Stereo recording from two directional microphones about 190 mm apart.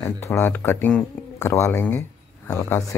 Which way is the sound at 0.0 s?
15° left (ahead or behind).